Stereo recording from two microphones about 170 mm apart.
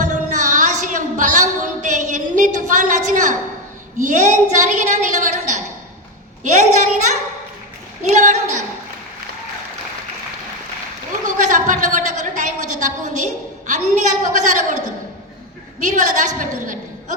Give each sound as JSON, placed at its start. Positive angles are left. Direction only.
{"t": 0.0, "sound": "music", "side_deg": -45}
{"t": 4.0, "sound": "a woman's voice", "side_deg": -45}
{"t": 11.3, "sound": "a woman's voice", "side_deg": -45}